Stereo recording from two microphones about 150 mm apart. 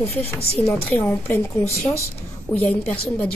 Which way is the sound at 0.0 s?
40° left (ahead or behind).